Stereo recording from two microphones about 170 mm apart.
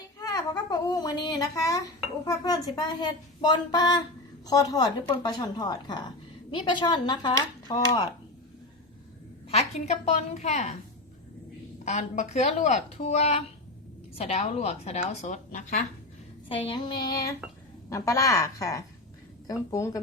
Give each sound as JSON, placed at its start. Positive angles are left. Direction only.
{"t": 0.2, "sound": "a child's voice", "side_deg": 20}
{"t": 9.5, "sound": "a woman's voice", "side_deg": 40}
{"t": 11.9, "sound": "a woman's voice", "side_deg": 40}
{"t": 16.5, "sound": "speech", "side_deg": 30}